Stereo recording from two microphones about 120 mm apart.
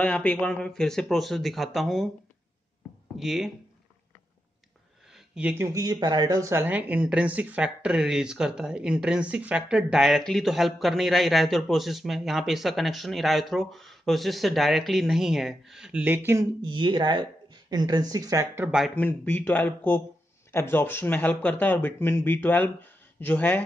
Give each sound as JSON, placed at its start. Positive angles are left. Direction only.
{"t": 0.0, "sound": "speech", "side_deg": 10}
{"t": 3.2, "sound": "speech", "side_deg": -5}
{"t": 5.3, "sound": "speech", "side_deg": -10}
{"t": 5.6, "sound": "speech", "side_deg": -25}
{"t": 16.6, "sound": "speech", "side_deg": -40}
{"t": 18.5, "sound": "speech", "side_deg": -15}
{"t": 18.9, "sound": "speech", "side_deg": 15}